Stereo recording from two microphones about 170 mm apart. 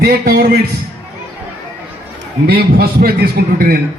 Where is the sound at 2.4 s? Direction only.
65° right (ahead or behind).